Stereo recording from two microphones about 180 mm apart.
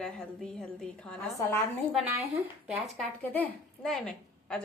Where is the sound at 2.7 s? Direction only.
Centre (ahead or behind).